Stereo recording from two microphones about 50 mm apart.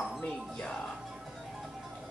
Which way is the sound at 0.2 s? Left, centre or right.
Left.